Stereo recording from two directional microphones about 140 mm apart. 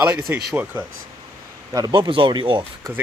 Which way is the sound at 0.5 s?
10° right (ahead or behind).